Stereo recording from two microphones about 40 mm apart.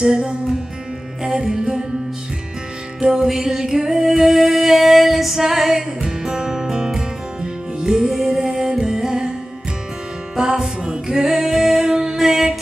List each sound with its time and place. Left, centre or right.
0.0 s music: right
3.2 s female singing: centre
5.8 s music: centre
10.3 s music: centre
12.2 s music: centre